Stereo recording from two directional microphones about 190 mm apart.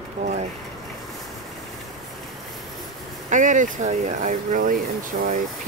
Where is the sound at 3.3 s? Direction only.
40° right (ahead or behind).